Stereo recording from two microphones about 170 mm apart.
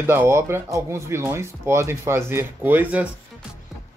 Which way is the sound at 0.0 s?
15° right (ahead or behind).